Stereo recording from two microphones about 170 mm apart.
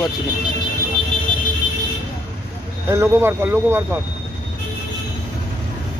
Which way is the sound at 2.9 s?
15° right (ahead or behind).